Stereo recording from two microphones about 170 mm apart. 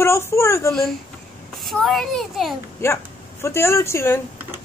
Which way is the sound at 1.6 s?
Centre (ahead or behind).